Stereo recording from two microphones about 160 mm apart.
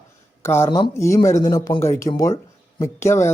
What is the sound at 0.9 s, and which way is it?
Speech, 20° left (ahead or behind).